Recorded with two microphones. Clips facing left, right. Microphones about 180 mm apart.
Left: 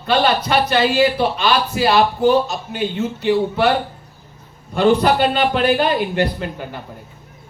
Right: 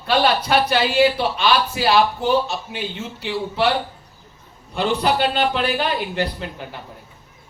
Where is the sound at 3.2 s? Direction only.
50° left (ahead or behind).